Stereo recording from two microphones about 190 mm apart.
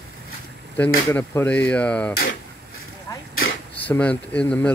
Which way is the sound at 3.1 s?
15° left (ahead or behind).